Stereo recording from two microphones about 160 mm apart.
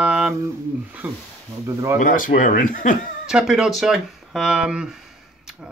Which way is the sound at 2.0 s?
55° left (ahead or behind).